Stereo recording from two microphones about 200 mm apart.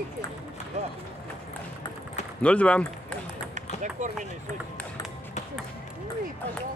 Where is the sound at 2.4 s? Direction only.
5° left (ahead or behind).